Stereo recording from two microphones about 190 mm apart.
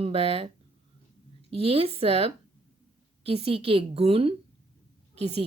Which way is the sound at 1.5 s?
30° right (ahead or behind).